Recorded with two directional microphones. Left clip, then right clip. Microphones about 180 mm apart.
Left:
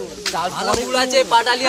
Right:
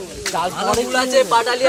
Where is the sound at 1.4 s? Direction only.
45° left (ahead or behind).